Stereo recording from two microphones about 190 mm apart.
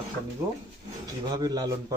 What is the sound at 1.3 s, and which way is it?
Speech, 20° right (ahead or behind).